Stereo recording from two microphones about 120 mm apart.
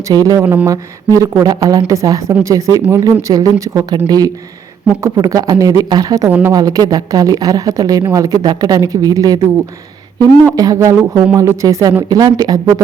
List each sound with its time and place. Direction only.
0.1 s speech: 30° right (ahead or behind)
0.4 s speech: 15° right (ahead or behind)
0.7 s a woman's voice: 30° right (ahead or behind)
5.0 s a woman's voice: 25° right (ahead or behind)